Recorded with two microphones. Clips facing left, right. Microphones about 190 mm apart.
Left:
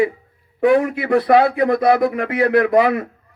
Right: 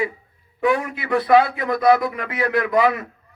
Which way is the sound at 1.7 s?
55° left (ahead or behind).